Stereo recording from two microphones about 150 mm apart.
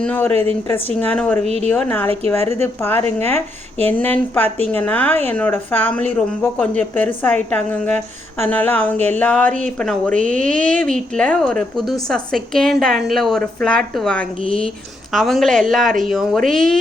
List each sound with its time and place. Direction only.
0.0 s a woman's voice: 10° left (ahead or behind)